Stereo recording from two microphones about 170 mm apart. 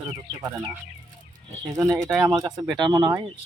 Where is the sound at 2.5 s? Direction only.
5° right (ahead or behind).